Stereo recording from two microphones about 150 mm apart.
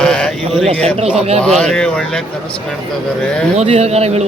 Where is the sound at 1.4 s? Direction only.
5° left (ahead or behind).